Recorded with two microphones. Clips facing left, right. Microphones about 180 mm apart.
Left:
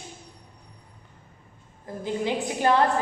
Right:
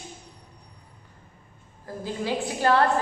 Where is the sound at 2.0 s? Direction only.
20° left (ahead or behind).